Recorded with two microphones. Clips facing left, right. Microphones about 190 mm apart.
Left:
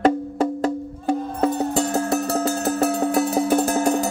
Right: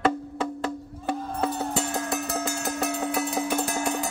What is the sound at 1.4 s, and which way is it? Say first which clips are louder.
Music: left 7 dB; 40° left (ahead or behind).